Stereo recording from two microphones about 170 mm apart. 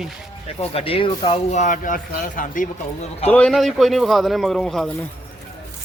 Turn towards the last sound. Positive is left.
turn(degrees=0)  # may be behind; listen again after turning